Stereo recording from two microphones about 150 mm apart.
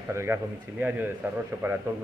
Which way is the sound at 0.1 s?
15° right (ahead or behind).